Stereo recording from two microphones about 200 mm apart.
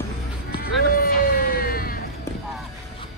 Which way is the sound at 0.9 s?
45° left (ahead or behind).